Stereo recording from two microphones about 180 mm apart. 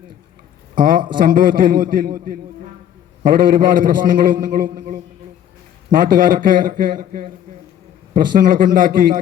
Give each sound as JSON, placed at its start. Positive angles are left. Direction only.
{"t": 0.8, "sound": "a man's voice", "side_deg": -50}